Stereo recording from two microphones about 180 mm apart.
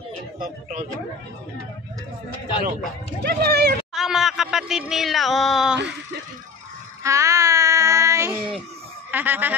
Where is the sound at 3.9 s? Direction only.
Centre (ahead or behind).